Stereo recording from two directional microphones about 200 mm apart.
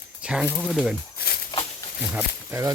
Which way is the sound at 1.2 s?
50° left (ahead or behind).